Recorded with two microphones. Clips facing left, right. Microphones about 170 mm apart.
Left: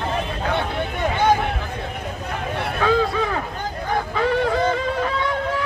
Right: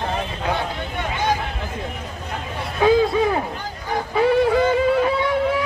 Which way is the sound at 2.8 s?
15° right (ahead or behind).